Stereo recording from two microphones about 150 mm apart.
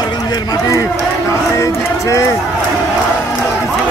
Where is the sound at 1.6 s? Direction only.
20° left (ahead or behind).